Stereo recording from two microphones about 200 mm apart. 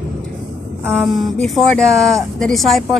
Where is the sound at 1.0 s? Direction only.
Centre (ahead or behind).